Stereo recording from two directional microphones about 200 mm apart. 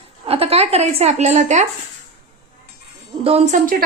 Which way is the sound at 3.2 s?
30° right (ahead or behind).